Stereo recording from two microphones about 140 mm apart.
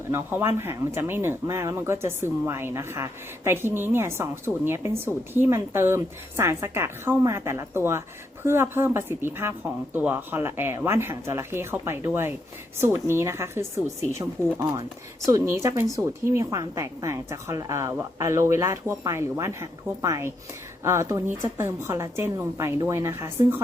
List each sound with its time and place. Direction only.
0.1 s a woman's voice: 15° right (ahead or behind)